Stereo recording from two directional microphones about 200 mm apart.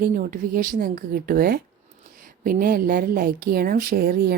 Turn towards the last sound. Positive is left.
turn(degrees=-45)  # may be behind; listen again after turning